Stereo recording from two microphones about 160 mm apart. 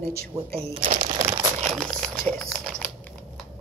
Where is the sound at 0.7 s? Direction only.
50° right (ahead or behind).